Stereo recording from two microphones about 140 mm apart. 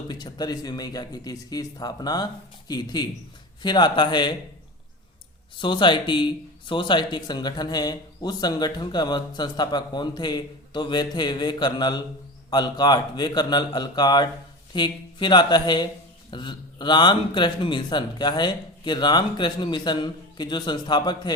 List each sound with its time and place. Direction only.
0.1 s speech: 30° left (ahead or behind)
5.5 s speech: 35° left (ahead or behind)